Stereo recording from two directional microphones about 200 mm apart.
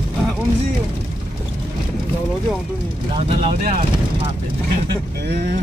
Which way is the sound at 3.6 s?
45° right (ahead or behind).